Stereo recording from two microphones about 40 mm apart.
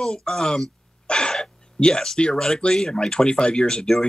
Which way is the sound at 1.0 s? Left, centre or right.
Left.